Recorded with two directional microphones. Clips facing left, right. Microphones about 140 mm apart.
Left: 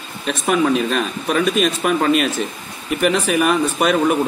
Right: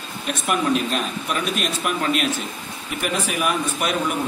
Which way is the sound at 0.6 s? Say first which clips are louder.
Left 4 dB; 80° left.